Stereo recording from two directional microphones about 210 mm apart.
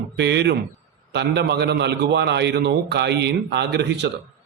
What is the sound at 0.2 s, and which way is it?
Speech, 55° right (ahead or behind).